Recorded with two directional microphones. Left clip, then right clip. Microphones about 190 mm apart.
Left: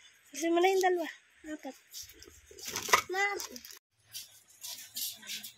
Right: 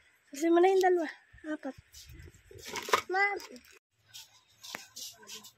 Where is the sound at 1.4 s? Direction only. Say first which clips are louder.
Right 4 dB; 35° right (ahead or behind).